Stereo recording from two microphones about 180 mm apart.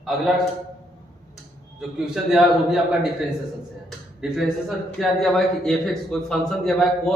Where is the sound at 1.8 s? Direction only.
5° right (ahead or behind).